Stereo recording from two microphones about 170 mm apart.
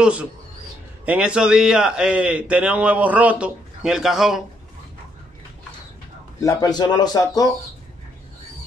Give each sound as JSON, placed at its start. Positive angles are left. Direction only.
{"t": 0.0, "sound": "a man's voice", "side_deg": -5}
{"t": 6.4, "sound": "speech", "side_deg": 25}